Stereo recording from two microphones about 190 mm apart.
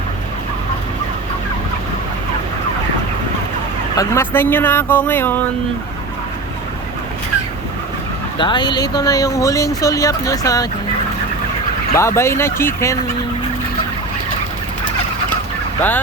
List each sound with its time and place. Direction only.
3.9 s speech: 15° left (ahead or behind)
8.4 s speech: 25° left (ahead or behind)
11.9 s speech: 15° left (ahead or behind)